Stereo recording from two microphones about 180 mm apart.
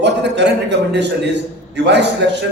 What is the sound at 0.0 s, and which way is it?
A man's voice, 70° right (ahead or behind).